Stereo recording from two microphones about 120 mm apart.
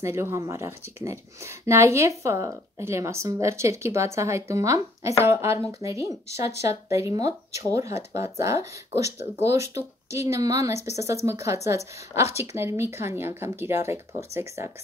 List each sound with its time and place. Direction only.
0.0 s speech: 20° right (ahead or behind)